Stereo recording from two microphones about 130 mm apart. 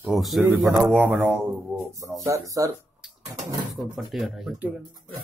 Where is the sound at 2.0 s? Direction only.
25° right (ahead or behind).